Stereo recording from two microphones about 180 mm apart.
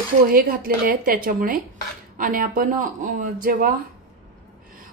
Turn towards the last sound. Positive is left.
turn(degrees=-50)  # may be behind; listen again after turning